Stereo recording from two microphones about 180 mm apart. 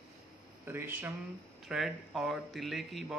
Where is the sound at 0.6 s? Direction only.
10° right (ahead or behind).